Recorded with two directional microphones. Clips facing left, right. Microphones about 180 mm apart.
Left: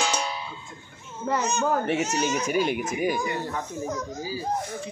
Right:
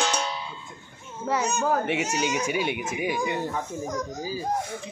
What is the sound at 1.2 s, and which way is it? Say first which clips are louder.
Speech: even; 10° right (ahead or behind).